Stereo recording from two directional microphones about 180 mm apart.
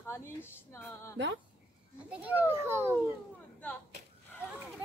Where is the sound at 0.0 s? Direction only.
15° left (ahead or behind).